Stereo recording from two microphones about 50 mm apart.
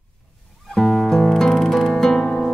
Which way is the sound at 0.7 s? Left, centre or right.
Centre.